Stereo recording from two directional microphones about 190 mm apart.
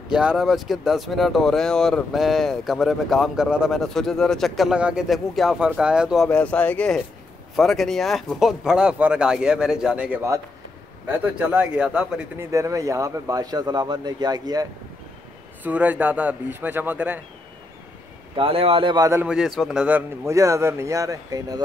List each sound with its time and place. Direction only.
0.1 s speech: 5° right (ahead or behind)
12.4 s speech: 15° right (ahead or behind)
15.6 s speech: 5° right (ahead or behind)
18.3 s speech: 30° right (ahead or behind)
19.2 s speech: centre (ahead or behind); by 21.6 s 20° right (ahead or behind)